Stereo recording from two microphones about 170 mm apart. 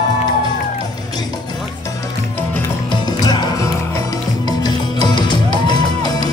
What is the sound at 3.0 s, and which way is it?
Music, 25° left (ahead or behind).